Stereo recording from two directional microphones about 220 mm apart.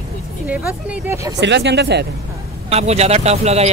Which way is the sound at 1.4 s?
50° right (ahead or behind).